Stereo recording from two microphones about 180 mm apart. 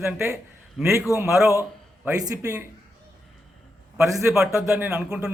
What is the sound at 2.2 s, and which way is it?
Speech, 15° right (ahead or behind).